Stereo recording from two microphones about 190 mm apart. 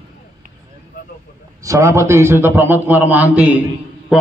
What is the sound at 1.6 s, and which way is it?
A man's voice, 15° right (ahead or behind).